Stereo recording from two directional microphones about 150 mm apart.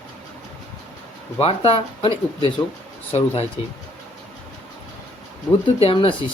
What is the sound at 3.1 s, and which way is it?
Speech, 40° left (ahead or behind).